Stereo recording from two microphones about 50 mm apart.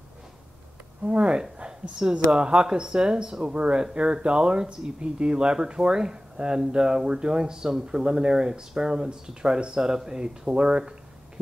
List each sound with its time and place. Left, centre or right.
1.0 s speech: right